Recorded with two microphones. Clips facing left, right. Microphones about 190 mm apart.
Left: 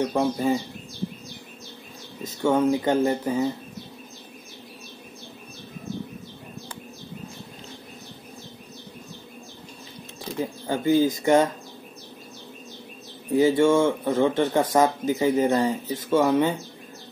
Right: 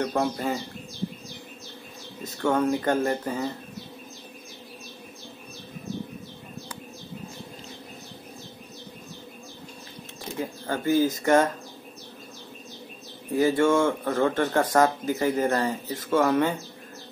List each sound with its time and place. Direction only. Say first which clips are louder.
0.0 s speech: left 3 dB; 15° left (ahead or behind)
2.4 s speech: left 3 dB; 10° left (ahead or behind)
10.7 s speech: left 2 dB; 15° left (ahead or behind)
13.4 s speech: left 2 dB; 10° left (ahead or behind)
13.8 s speech: left 2 dB; 20° left (ahead or behind)